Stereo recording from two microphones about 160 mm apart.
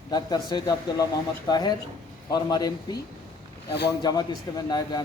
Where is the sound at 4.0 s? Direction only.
25° left (ahead or behind).